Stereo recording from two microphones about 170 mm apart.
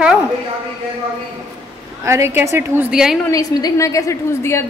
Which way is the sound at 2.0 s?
15° right (ahead or behind).